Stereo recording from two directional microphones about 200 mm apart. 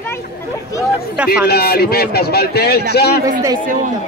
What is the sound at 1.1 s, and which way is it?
Speech, 5° right (ahead or behind).